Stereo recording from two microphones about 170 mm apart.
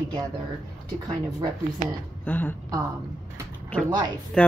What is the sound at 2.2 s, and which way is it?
Speech, 10° left (ahead or behind).